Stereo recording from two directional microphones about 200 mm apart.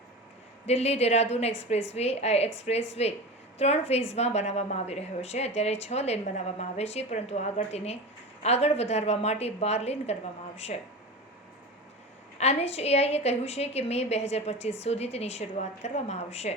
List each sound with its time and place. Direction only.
0.6 s a woman's voice: 30° left (ahead or behind)
12.4 s a woman's voice: 30° left (ahead or behind)